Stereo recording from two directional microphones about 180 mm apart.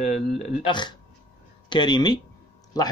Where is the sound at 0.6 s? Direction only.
25° left (ahead or behind).